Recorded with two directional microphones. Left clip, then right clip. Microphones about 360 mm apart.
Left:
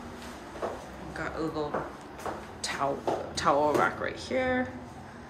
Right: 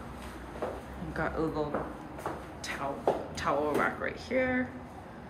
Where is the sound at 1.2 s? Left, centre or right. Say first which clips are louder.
Right 1 dB; centre.